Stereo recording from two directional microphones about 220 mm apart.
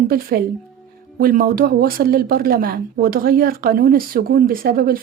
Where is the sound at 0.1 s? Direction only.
45° right (ahead or behind).